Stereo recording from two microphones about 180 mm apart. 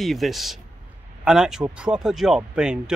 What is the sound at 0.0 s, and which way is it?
Speech, centre (ahead or behind).